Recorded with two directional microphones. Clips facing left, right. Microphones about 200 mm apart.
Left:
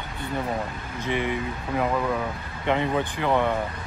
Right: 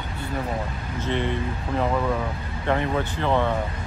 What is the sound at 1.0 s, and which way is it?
Speech, 10° left (ahead or behind).